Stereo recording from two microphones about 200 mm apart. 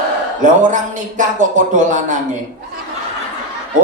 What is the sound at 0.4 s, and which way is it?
Speech, 40° right (ahead or behind).